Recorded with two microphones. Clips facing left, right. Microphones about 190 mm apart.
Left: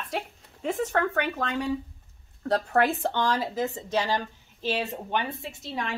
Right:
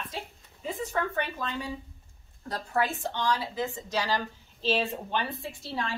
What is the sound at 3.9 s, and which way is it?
A woman's voice, 20° left (ahead or behind).